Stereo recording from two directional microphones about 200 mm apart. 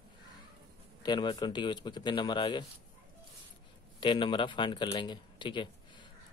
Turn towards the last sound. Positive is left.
turn(degrees=25)  # may be behind; listen again after turning